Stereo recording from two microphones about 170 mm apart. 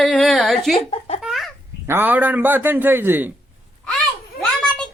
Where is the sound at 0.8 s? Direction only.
35° left (ahead or behind).